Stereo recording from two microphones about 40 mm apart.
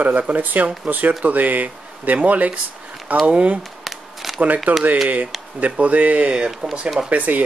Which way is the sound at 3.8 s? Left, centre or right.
Centre.